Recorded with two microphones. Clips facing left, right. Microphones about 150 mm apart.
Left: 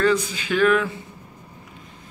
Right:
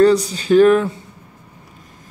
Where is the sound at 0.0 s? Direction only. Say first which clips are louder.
Right 8 dB; 35° right (ahead or behind).